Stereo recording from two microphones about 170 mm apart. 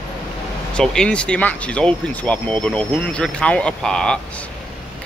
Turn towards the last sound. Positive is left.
turn(degrees=5)  # may be behind; listen again after turning